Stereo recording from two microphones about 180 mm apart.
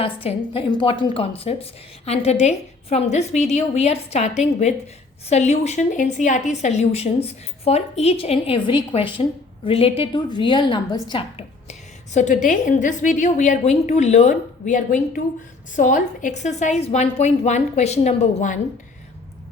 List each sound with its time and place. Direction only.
0.0 s a woman's voice: 30° left (ahead or behind)